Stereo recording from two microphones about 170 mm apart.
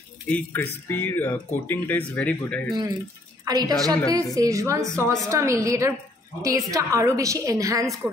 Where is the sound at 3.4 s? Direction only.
25° right (ahead or behind).